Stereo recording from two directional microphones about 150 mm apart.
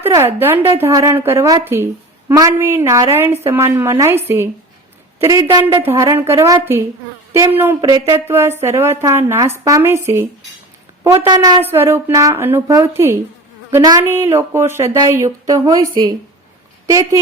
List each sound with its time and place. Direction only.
0.1 s speech: 15° right (ahead or behind)
7.8 s speech: 25° right (ahead or behind)
11.6 s a woman's voice: 15° right (ahead or behind)
16.8 s speech: 20° right (ahead or behind)